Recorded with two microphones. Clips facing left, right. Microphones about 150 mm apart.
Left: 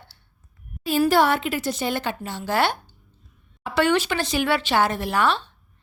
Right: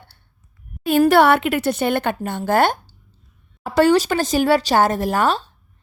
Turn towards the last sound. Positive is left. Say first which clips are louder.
# right 3 dB
turn(degrees=-40)  # may be behind; listen again after turning